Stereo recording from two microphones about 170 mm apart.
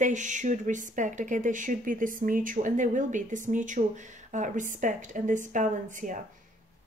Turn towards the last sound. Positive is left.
turn(degrees=-50)  # may be behind; listen again after turning